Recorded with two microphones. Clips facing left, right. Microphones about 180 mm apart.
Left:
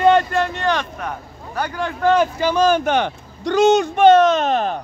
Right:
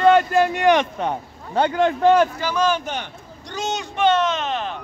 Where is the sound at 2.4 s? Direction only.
20° left (ahead or behind).